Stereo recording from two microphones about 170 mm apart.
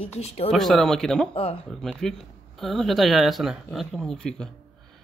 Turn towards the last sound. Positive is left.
turn(degrees=5)  # may be behind; listen again after turning